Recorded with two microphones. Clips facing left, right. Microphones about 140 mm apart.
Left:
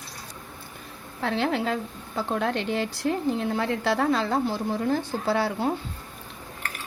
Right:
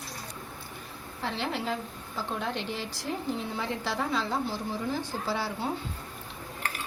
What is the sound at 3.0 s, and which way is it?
Speech, 90° left.